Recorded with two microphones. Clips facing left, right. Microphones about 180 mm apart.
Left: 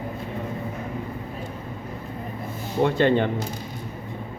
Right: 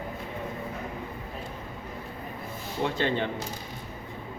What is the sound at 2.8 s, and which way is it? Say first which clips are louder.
Speech: left 8 dB; 55° left (ahead or behind).